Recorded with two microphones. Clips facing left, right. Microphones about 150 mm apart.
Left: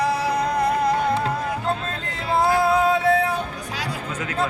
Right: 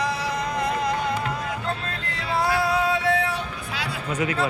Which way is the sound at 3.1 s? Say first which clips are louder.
Left 3 dB; 50° left (ahead or behind).